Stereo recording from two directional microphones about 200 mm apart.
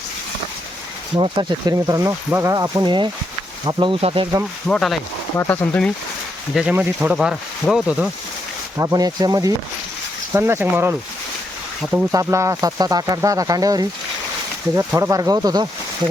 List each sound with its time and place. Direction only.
1.1 s speech: 25° right (ahead or behind)
4.7 s speech: centre (ahead or behind)
6.5 s speech: 5° right (ahead or behind)
8.8 s speech: 15° right (ahead or behind)